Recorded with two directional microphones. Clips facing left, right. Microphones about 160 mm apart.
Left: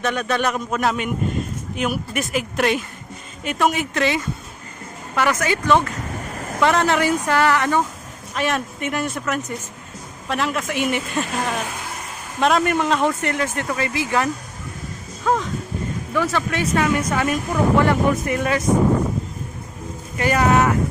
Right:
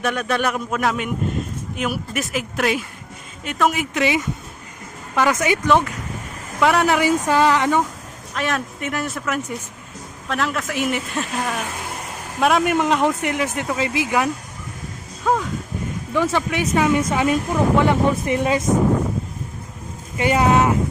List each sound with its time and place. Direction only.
0.0 s speech: 5° right (ahead or behind)
3.9 s speech: 15° right (ahead or behind)
6.6 s speech: 5° right (ahead or behind)
8.4 s speech: centre (ahead or behind)
12.4 s speech: 5° right (ahead or behind); by 18.6 s 25° right (ahead or behind)
20.1 s speech: 20° right (ahead or behind)